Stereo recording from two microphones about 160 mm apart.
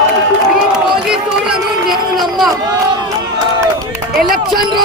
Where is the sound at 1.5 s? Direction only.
Centre (ahead or behind).